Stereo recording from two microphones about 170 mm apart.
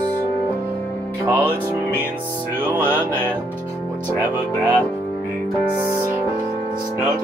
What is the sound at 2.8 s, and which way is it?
Music, 10° left (ahead or behind).